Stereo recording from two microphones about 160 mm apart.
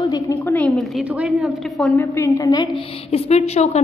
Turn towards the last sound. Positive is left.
turn(degrees=40)  # may be behind; listen again after turning